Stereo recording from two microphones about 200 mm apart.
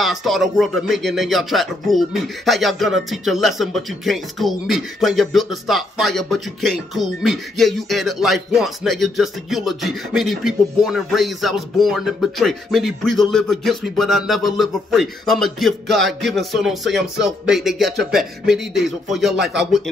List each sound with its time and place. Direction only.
0.0 s speech: centre (ahead or behind)
19.3 s speech: 55° right (ahead or behind)